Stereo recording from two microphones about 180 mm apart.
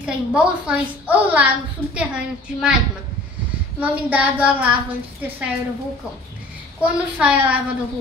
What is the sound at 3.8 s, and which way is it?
Speech, 10° right (ahead or behind).